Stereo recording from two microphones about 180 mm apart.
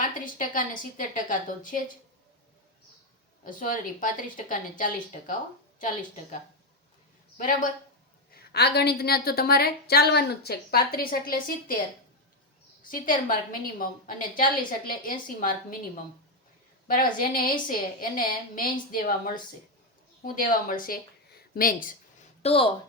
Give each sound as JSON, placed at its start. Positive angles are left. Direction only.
{"t": 0.0, "sound": "a woman's voice", "side_deg": 50}
{"t": 3.4, "sound": "a woman's voice", "side_deg": 50}
{"t": 7.3, "sound": "a woman's voice", "side_deg": 45}
{"t": 8.3, "sound": "a woman's voice", "side_deg": 65}
{"t": 12.8, "sound": "a woman's voice", "side_deg": 50}
{"t": 16.9, "sound": "a woman's voice", "side_deg": 50}
{"t": 21.5, "sound": "a sound", "side_deg": 50}
{"t": 22.4, "sound": "speech", "side_deg": 30}